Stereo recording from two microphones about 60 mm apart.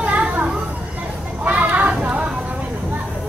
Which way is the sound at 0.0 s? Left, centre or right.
Right.